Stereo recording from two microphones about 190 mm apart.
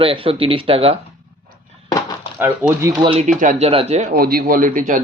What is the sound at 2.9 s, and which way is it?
Speech, 25° right (ahead or behind).